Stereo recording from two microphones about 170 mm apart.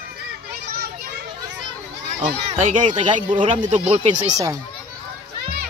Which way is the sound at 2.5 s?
45° right (ahead or behind).